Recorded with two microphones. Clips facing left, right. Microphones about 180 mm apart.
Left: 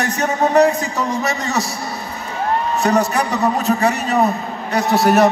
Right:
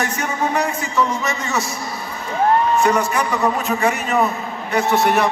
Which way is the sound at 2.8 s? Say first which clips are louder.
Left 1 dB; 40° left (ahead or behind).